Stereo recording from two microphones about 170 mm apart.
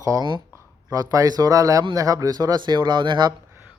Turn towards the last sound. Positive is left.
turn(degrees=-25)  # may be behind; listen again after turning